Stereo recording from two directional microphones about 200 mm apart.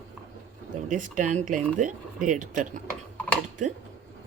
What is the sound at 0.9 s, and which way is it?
Speech, 40° right (ahead or behind).